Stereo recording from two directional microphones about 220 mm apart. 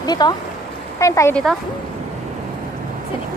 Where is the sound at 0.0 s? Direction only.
20° left (ahead or behind).